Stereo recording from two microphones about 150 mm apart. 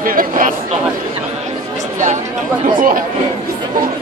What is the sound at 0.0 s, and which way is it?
Chatter, 70° right (ahead or behind).